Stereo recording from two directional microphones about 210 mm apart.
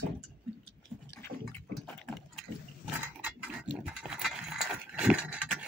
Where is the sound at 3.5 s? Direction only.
5° right (ahead or behind).